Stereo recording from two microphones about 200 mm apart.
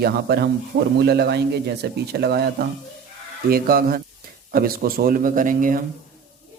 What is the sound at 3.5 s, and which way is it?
Speech, 50° right (ahead or behind).